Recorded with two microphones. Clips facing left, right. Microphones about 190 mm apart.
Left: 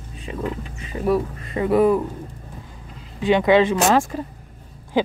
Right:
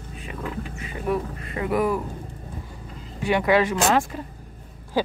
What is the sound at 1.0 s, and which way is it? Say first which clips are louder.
Speech: left 5 dB; 30° left (ahead or behind).